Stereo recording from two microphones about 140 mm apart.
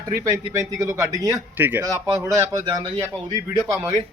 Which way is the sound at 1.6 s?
15° right (ahead or behind).